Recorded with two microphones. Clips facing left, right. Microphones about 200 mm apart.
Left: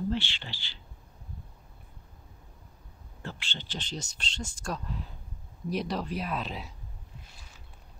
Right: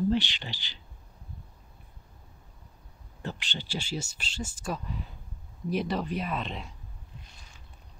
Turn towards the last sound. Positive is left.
turn(degrees=5)  # may be behind; listen again after turning